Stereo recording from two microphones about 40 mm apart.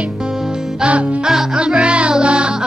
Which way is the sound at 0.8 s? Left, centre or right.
Right.